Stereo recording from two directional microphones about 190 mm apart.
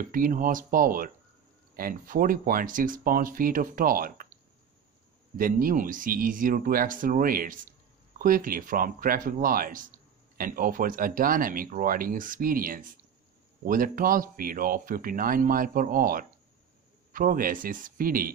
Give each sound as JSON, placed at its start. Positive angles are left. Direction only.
{"t": 0.1, "sound": "speech", "side_deg": -45}
{"t": 5.4, "sound": "speech", "side_deg": -50}